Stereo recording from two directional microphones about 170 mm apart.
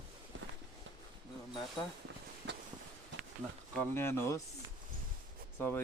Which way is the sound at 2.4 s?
90° right.